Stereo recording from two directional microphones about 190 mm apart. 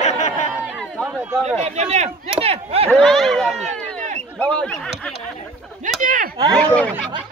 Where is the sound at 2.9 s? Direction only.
Centre (ahead or behind).